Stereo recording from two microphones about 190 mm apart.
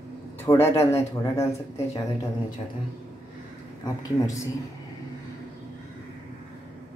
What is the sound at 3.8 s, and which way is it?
Speech, 15° left (ahead or behind).